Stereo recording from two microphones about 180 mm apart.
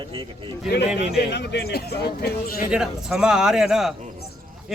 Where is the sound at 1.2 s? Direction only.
70° left (ahead or behind).